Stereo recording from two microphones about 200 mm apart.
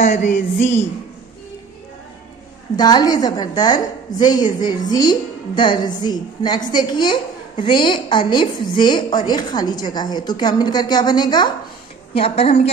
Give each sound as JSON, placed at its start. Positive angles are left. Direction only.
{"t": 0.0, "sound": "a woman's voice", "side_deg": 35}
{"t": 2.7, "sound": "a woman's voice", "side_deg": 20}